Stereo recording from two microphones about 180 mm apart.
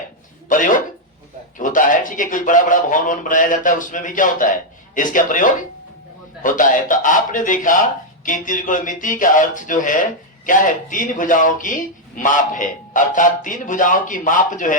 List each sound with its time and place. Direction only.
0.4 s speech: 45° left (ahead or behind)